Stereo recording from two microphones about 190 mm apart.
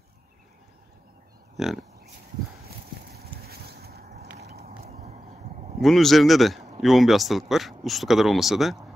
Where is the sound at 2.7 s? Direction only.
55° right (ahead or behind); by 5.7 s 35° right (ahead or behind).